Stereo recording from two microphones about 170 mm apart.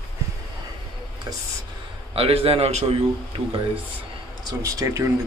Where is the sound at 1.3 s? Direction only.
25° right (ahead or behind).